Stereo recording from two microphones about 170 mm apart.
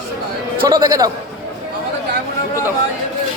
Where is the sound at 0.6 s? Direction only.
25° right (ahead or behind).